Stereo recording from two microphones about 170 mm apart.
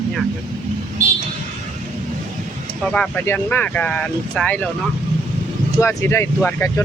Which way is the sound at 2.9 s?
10° left (ahead or behind).